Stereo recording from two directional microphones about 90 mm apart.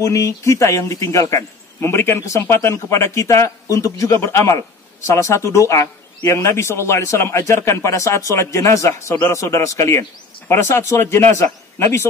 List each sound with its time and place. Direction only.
0.0 s a man's voice: 35° left (ahead or behind)